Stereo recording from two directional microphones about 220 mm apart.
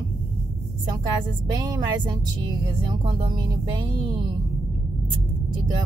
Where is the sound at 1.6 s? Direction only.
20° right (ahead or behind).